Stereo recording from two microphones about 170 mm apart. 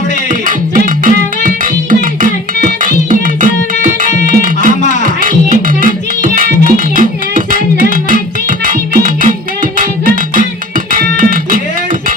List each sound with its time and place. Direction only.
0.3 s music: 50° right (ahead or behind)
10.9 s music: 55° right (ahead or behind)